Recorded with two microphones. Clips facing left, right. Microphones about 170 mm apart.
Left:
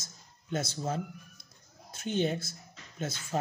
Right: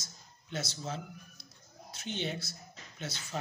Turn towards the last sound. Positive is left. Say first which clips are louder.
# left 6 dB
turn(degrees=50)  # may be behind; listen again after turning